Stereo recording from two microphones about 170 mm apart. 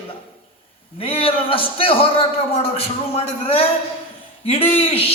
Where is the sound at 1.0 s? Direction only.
35° left (ahead or behind).